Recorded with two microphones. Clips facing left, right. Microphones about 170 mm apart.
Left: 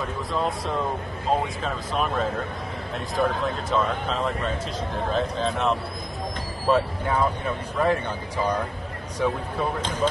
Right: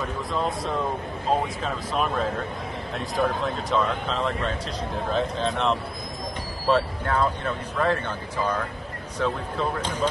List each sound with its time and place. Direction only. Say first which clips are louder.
0.3 s speech: left 1 dB; centre (ahead or behind)
9.2 s speech: left 1 dB; 10° left (ahead or behind)